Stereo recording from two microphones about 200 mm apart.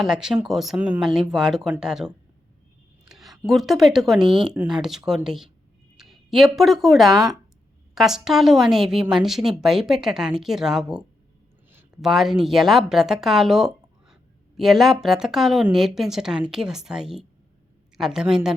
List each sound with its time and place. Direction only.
0.0 s a woman's voice: 5° right (ahead or behind)
3.1 s a sound: centre (ahead or behind)
3.4 s a woman's voice: centre (ahead or behind)
4.2 s speech: 25° right (ahead or behind)
4.4 s a woman's voice: centre (ahead or behind)